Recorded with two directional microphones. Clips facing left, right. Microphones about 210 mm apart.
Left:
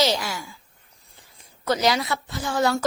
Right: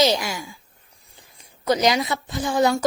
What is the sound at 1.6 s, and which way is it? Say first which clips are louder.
A woman's voice: right 2 dB; 15° right (ahead or behind).